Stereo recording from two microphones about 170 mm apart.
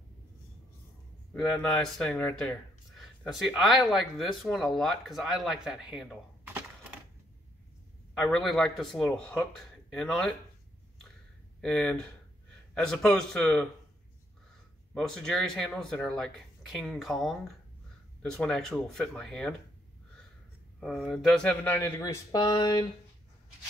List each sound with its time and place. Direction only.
1.3 s speech: 5° left (ahead or behind)
8.2 s speech: centre (ahead or behind)
11.6 s speech: 5° left (ahead or behind)
15.0 s speech: 5° left (ahead or behind)
20.8 s speech: centre (ahead or behind)
21.8 s speech: 20° left (ahead or behind)